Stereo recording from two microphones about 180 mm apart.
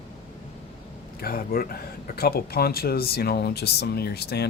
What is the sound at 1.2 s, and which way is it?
Speech, 55° left (ahead or behind).